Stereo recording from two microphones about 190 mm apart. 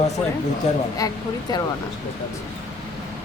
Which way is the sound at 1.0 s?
20° left (ahead or behind).